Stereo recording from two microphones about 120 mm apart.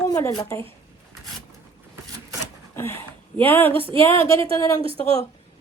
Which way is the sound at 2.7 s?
20° left (ahead or behind).